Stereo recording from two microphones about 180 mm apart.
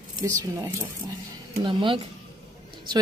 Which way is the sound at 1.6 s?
30° right (ahead or behind).